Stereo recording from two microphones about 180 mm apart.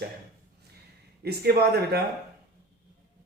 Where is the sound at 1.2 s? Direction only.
60° right (ahead or behind).